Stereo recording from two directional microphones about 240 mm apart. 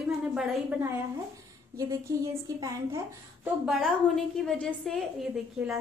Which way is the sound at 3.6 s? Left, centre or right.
Centre.